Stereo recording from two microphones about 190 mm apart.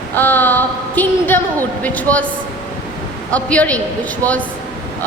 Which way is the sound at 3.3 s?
5° left (ahead or behind).